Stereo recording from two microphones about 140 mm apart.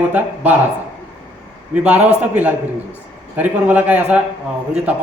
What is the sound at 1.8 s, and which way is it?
A man's voice, 10° right (ahead or behind).